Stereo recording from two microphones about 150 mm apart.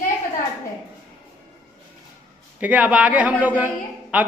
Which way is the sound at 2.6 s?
10° right (ahead or behind).